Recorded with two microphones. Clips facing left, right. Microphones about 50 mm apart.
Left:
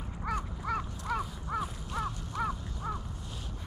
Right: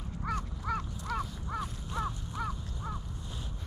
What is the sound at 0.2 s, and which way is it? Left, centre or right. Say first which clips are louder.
Crow: left 1 dB; centre.